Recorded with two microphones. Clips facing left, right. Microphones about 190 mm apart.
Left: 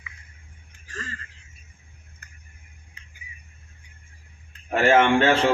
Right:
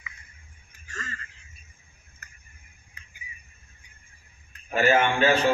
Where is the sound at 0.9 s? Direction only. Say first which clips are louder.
Left 2 dB; 30° left (ahead or behind).